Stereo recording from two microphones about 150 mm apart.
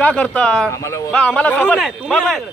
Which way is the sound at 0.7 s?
20° left (ahead or behind).